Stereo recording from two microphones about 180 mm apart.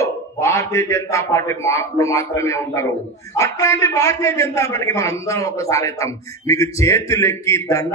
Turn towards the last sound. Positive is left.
turn(degrees=15)  # may be behind; listen again after turning